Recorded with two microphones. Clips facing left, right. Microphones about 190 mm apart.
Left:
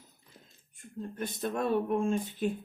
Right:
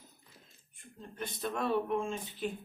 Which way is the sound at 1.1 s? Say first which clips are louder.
Left 3 dB; 45° left (ahead or behind).